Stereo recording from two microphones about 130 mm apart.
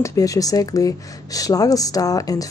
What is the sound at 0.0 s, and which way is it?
Speech, 25° left (ahead or behind).